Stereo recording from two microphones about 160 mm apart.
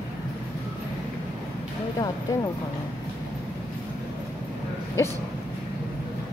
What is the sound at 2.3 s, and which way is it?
Speech, 20° left (ahead or behind).